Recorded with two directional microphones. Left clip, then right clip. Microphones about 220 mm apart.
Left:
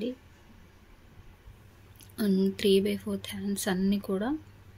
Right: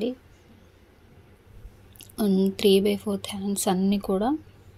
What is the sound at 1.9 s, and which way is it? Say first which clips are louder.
A woman's voice: right 5 dB; 10° right (ahead or behind).